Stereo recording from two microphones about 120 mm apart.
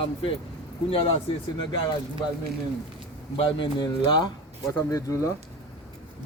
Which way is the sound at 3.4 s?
40° left (ahead or behind).